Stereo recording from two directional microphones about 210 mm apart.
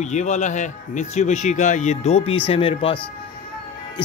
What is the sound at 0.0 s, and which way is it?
Speech, 35° left (ahead or behind).